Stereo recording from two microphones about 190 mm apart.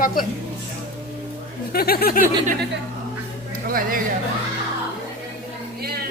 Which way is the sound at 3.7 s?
50° right (ahead or behind).